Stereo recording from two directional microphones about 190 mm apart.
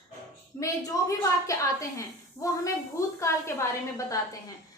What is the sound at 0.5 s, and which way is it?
A woman's voice, 15° left (ahead or behind).